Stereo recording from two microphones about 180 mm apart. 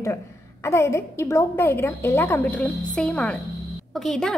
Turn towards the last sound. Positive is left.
turn(degrees=0)  # may be behind; listen again after turning